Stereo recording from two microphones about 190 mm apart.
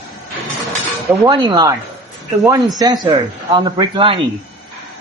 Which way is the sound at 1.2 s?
20° right (ahead or behind).